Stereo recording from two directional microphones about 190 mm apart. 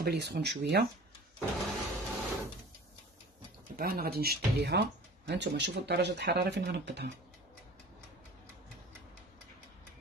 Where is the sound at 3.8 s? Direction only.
50° right (ahead or behind).